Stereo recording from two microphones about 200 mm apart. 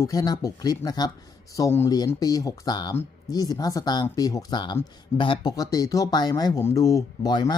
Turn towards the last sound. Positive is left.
turn(degrees=20)  # may be behind; listen again after turning